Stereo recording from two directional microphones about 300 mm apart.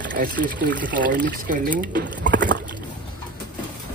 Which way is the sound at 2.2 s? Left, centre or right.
Right.